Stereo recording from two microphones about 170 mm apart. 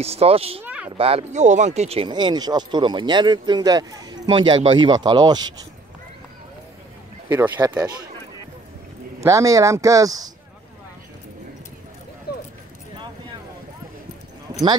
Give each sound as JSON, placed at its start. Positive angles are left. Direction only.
{"t": 0.0, "sound": "speech", "side_deg": -35}
{"t": 0.7, "sound": "a sound", "side_deg": -10}
{"t": 0.9, "sound": "speech", "side_deg": -35}
{"t": 7.2, "sound": "speech", "side_deg": -10}
{"t": 9.2, "sound": "speech", "side_deg": -20}